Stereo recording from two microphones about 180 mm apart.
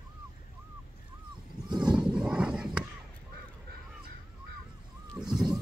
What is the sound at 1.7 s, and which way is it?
Wild animals, 25° right (ahead or behind).